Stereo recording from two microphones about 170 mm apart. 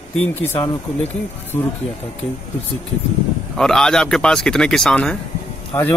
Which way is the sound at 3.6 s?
5° left (ahead or behind).